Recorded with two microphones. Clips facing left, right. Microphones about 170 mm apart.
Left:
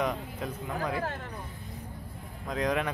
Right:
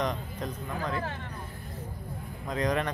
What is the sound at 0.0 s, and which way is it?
Speech, 5° left (ahead or behind).